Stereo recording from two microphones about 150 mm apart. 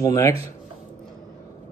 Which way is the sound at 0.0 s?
20° left (ahead or behind).